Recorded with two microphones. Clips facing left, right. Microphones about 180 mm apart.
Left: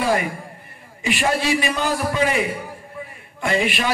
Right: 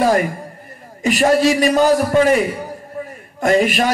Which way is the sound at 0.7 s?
40° right (ahead or behind).